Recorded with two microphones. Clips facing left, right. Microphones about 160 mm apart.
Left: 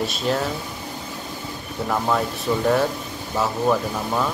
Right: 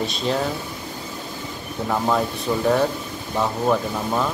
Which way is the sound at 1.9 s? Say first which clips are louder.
Right 1 dB; 5° right (ahead or behind).